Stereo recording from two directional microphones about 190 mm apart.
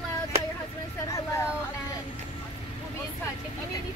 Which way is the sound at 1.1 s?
15° left (ahead or behind).